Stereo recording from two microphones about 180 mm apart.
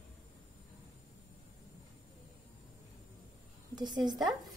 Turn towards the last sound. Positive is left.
turn(degrees=-20)  # may be behind; listen again after turning